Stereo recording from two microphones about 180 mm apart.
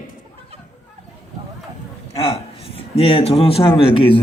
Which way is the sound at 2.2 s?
35° left (ahead or behind).